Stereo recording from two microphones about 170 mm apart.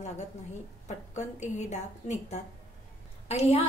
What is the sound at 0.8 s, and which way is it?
A woman's voice, 45° left (ahead or behind).